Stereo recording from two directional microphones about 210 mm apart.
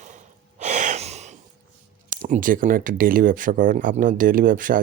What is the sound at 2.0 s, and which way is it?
Speech, 40° right (ahead or behind).